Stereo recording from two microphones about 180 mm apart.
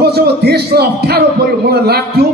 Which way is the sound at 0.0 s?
65° right (ahead or behind).